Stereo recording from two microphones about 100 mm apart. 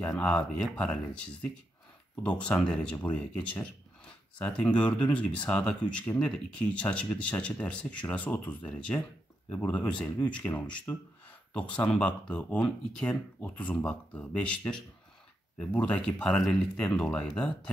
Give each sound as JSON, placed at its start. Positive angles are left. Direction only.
{"t": 0.2, "sound": "speech", "side_deg": 10}